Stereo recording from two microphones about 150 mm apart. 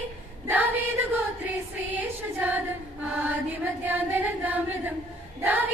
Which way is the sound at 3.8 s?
10° right (ahead or behind).